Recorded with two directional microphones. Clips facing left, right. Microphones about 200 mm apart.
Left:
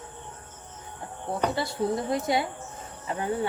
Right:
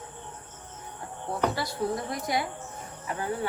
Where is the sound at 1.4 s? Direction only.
25° left (ahead or behind).